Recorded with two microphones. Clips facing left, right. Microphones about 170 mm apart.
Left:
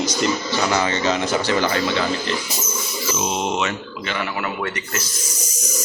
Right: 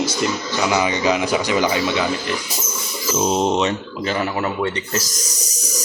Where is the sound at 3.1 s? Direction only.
35° right (ahead or behind).